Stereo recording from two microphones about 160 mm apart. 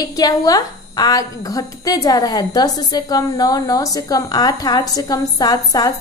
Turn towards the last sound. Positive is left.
turn(degrees=25)  # may be behind; listen again after turning